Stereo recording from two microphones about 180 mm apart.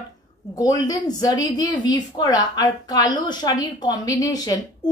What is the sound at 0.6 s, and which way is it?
A woman's voice, 20° left (ahead or behind).